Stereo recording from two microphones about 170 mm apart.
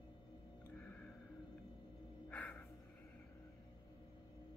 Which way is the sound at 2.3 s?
10° left (ahead or behind).